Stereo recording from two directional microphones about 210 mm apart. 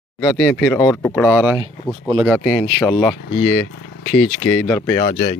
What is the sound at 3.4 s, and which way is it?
Speech, 15° left (ahead or behind).